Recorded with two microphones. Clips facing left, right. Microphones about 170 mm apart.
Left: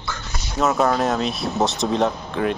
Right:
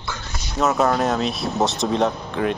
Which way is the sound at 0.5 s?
Centre (ahead or behind).